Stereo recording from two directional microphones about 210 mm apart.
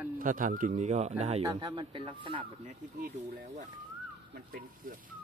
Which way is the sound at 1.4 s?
15° right (ahead or behind).